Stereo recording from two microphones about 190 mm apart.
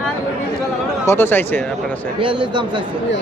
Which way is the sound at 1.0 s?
10° left (ahead or behind).